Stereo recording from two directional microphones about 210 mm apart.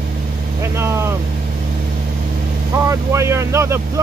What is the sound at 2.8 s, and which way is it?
Speech, 15° right (ahead or behind).